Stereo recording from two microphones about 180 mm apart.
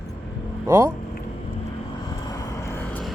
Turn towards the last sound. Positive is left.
turn(degrees=10)  # may be behind; listen again after turning